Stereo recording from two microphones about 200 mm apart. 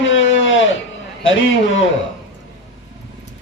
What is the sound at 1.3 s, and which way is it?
Speech, 70° left (ahead or behind).